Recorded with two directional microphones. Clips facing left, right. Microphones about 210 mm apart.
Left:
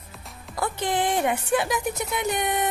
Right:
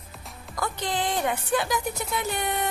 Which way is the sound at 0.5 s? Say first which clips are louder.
Left 3 dB; 30° left (ahead or behind).